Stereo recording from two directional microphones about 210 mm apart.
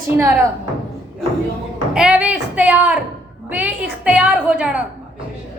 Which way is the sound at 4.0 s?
5° right (ahead or behind).